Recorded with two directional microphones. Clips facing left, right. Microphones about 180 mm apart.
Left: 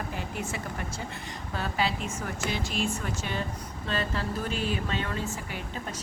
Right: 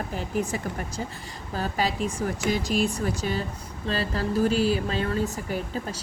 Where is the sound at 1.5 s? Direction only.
40° right (ahead or behind).